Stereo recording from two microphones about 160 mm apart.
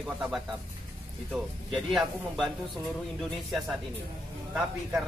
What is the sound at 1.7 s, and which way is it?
Speech, centre (ahead or behind).